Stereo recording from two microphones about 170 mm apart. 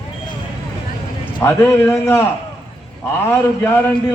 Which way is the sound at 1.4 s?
15° left (ahead or behind).